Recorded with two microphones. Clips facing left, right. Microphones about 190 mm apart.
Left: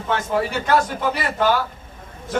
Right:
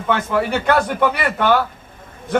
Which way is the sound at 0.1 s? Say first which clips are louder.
Right 3 dB; 60° right (ahead or behind).